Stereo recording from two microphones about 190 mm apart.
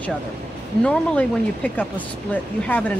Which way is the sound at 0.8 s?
5° left (ahead or behind).